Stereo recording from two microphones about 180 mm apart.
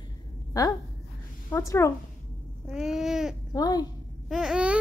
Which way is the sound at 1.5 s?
15° left (ahead or behind).